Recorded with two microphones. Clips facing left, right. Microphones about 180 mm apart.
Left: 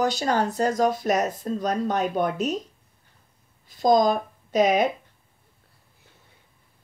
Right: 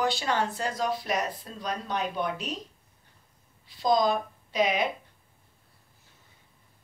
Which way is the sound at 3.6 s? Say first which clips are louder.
Left 5 dB; 45° left (ahead or behind).